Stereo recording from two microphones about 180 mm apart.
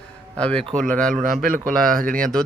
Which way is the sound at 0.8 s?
5° left (ahead or behind).